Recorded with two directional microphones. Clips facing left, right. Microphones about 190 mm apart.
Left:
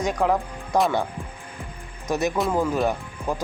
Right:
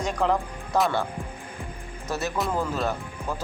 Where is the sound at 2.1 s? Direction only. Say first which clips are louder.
Left 5 dB; 15° left (ahead or behind).